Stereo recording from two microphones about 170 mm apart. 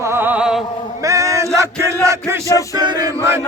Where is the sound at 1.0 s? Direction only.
20° right (ahead or behind).